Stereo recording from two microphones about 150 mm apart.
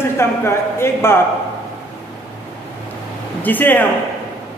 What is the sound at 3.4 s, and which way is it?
Speech, 10° left (ahead or behind).